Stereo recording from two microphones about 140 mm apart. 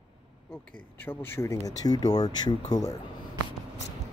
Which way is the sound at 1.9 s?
30° left (ahead or behind).